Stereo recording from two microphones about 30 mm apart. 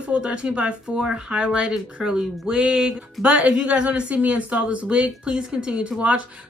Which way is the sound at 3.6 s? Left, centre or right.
Right.